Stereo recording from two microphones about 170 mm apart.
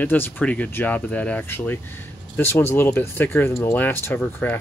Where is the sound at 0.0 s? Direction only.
10° left (ahead or behind).